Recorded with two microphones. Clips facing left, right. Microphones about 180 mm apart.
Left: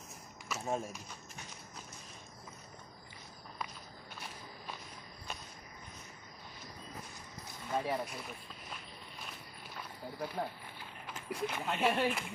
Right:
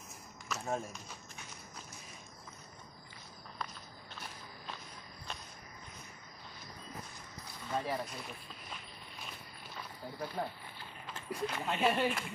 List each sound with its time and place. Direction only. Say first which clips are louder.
0.5 s speech: left 1 dB; 5° left (ahead or behind)
3.5 s walk: even; 10° left (ahead or behind)
7.7 s speech: left 1 dB; 5° left (ahead or behind)
9.8 s a sound: left 1 dB; centre (ahead or behind)
11.1 s a sound: even; 15° left (ahead or behind)
11.6 s speech: even; centre (ahead or behind)